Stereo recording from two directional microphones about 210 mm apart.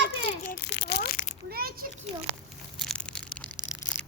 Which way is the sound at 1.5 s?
45° right (ahead or behind).